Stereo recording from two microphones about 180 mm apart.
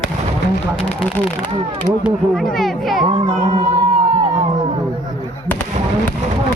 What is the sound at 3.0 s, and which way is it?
Speech, 25° right (ahead or behind).